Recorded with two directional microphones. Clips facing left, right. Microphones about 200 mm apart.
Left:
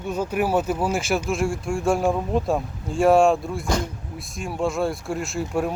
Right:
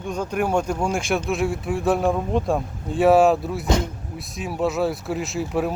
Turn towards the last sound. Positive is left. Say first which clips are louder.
# right 1 dB
turn(degrees=0)  # may be behind; listen again after turning